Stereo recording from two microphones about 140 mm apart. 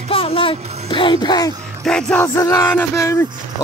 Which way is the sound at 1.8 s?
5° left (ahead or behind).